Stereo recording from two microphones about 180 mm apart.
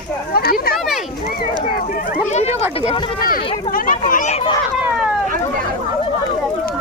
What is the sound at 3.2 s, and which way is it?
Speech, 50° left (ahead or behind).